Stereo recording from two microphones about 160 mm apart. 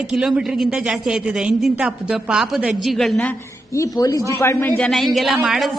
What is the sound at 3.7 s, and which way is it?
A man's voice, 20° left (ahead or behind).